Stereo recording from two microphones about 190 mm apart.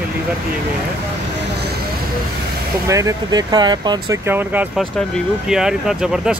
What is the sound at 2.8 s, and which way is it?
Speech, 15° right (ahead or behind).